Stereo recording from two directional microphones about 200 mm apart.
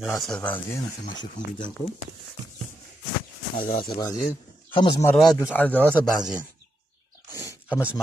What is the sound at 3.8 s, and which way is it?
A man's voice, 20° left (ahead or behind).